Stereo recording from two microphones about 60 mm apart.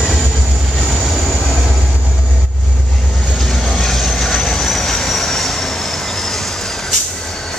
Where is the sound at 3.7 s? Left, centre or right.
Centre.